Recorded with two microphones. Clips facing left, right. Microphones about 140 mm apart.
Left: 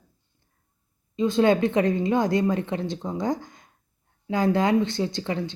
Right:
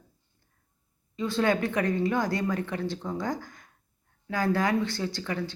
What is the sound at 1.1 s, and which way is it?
Speech, 20° left (ahead or behind).